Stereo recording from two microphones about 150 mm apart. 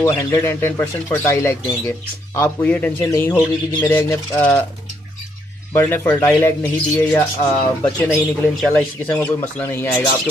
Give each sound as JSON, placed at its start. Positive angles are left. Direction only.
{"t": 0.0, "sound": "speech", "side_deg": 20}
{"t": 5.7, "sound": "speech", "side_deg": 15}